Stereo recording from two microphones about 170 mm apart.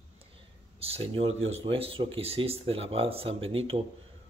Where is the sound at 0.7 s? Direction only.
35° right (ahead or behind).